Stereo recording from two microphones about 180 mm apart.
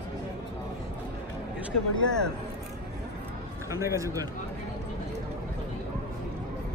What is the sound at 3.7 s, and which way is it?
Speech, 15° right (ahead or behind).